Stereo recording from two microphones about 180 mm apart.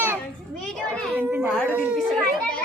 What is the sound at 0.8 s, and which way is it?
A child's voice, 5° right (ahead or behind).